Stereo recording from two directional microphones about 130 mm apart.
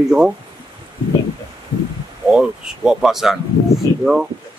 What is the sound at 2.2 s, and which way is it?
Speech, 5° right (ahead or behind).